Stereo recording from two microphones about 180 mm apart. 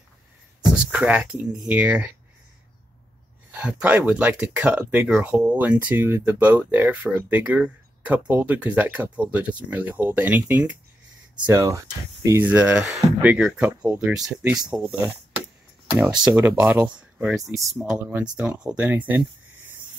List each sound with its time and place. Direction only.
0.7 s speech: 5° right (ahead or behind)
3.5 s speech: 10° right (ahead or behind)
16.3 s speech: 15° right (ahead or behind)